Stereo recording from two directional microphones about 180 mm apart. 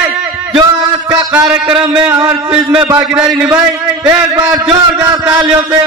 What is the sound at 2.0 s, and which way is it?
A man's voice, 10° right (ahead or behind).